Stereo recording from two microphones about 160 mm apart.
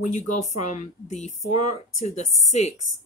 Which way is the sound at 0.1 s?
45° left (ahead or behind).